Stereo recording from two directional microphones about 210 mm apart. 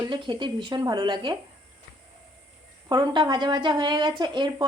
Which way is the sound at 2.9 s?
20° right (ahead or behind).